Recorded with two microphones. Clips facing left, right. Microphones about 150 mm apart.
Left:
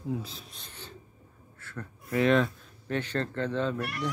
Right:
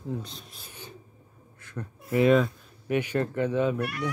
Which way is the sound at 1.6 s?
15° right (ahead or behind).